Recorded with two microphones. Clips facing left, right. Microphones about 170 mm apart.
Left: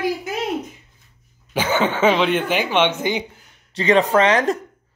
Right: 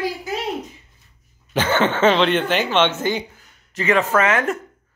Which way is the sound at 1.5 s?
10° left (ahead or behind).